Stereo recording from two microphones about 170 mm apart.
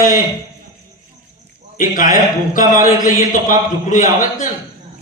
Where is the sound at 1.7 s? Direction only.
55° left (ahead or behind).